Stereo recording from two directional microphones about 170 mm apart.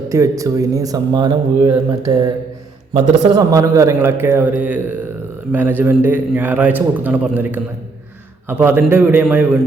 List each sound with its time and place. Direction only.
0.1 s speech: 20° right (ahead or behind)
3.3 s a man's voice: 20° right (ahead or behind)